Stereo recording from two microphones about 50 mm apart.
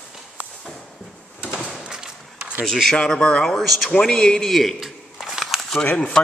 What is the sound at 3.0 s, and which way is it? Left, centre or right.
Speech, centre.